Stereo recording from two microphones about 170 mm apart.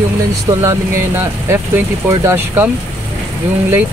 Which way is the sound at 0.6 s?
15° right (ahead or behind).